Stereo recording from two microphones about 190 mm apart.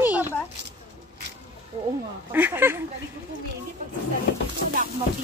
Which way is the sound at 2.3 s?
10° right (ahead or behind).